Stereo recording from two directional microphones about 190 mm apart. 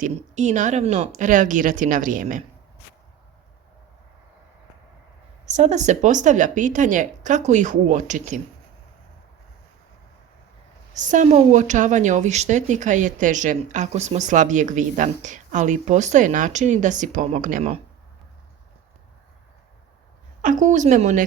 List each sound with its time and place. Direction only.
0.0 s speech: 40° right (ahead or behind)
5.5 s a woman's voice: 40° right (ahead or behind)
10.9 s a woman's voice: 40° right (ahead or behind)
20.4 s a woman's voice: 40° right (ahead or behind)